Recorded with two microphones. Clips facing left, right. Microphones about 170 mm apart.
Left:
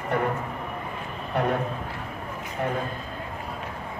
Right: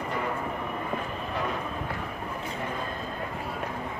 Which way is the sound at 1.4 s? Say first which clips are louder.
Left 7 dB; 60° left (ahead or behind).